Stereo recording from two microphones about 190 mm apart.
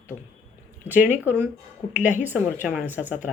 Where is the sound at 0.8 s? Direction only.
10° right (ahead or behind).